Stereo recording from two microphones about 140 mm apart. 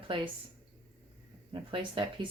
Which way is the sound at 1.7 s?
35° right (ahead or behind).